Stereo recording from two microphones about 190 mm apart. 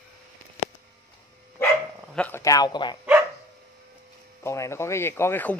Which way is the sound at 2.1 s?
10° left (ahead or behind).